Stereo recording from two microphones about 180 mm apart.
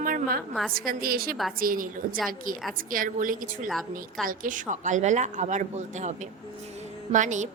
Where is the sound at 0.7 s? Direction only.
55° right (ahead or behind).